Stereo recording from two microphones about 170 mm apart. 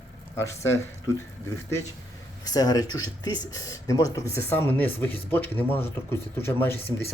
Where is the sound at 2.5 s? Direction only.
20° left (ahead or behind).